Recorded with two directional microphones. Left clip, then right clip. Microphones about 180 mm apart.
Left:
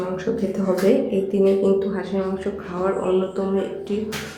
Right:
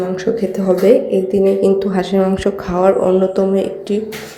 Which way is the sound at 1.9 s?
35° right (ahead or behind).